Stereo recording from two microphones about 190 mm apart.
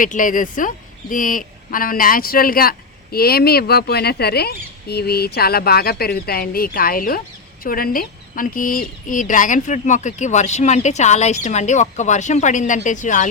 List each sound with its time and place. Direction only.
0.0 s speech: 45° left (ahead or behind)